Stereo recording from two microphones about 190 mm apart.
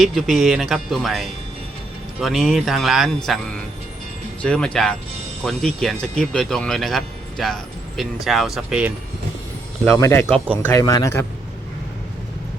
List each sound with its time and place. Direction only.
0.0 s speech: centre (ahead or behind)
9.8 s speech: 10° left (ahead or behind)
10.4 s speech: 10° right (ahead or behind)
10.7 s speech: 20° left (ahead or behind)